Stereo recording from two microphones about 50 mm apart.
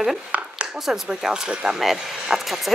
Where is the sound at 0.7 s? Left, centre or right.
Centre.